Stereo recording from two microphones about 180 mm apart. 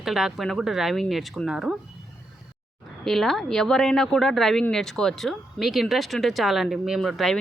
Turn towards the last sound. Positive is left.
turn(degrees=0)  # may be behind; listen again after turning